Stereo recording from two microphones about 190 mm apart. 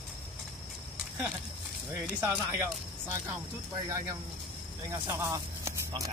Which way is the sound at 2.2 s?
10° right (ahead or behind).